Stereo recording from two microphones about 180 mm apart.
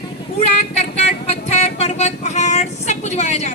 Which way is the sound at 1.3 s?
35° left (ahead or behind).